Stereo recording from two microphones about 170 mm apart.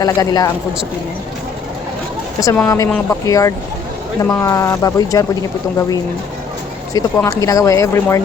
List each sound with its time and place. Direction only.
0.0 s speech: 20° left (ahead or behind)
2.4 s speech: 20° left (ahead or behind)
6.9 s speech: 20° left (ahead or behind)